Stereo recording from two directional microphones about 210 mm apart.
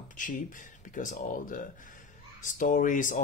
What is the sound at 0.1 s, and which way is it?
Speech, 40° left (ahead or behind).